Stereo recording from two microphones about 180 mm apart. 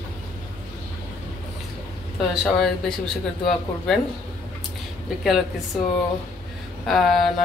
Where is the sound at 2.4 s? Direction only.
Centre (ahead or behind).